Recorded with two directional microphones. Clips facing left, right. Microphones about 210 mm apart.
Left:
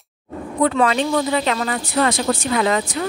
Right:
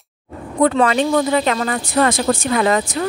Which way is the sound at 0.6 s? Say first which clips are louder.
Right 3 dB; 45° right (ahead or behind).